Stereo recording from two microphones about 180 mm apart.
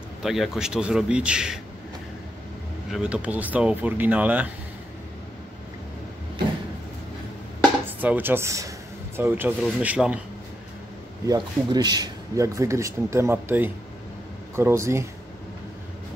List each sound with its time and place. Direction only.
0.2 s a man's voice: centre (ahead or behind)
2.9 s speech: 5° right (ahead or behind)
8.0 s a man's voice: 10° right (ahead or behind)
11.2 s speech: 25° right (ahead or behind)